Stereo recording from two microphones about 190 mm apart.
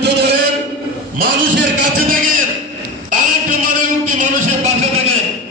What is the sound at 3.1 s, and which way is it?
Music, 40° right (ahead or behind).